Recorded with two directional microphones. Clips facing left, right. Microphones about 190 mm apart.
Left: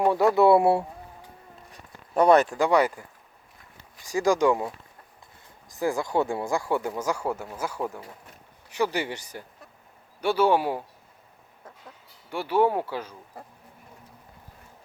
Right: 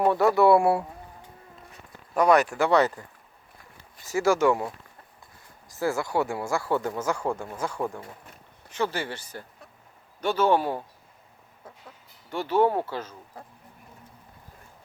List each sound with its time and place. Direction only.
0.1 s speech: 15° left (ahead or behind)
1.7 s a sound: 30° left (ahead or behind)
2.6 s speech: 10° left (ahead or behind)
4.0 s speech: 15° left (ahead or behind)
5.7 s speech: 15° left (ahead or behind)
12.3 s speech: 10° left (ahead or behind)